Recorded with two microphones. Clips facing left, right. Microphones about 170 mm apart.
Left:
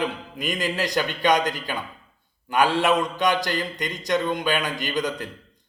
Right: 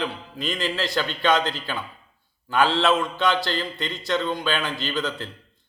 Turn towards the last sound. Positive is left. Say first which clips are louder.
# left 1 dB
turn(degrees=15)  # may be behind; listen again after turning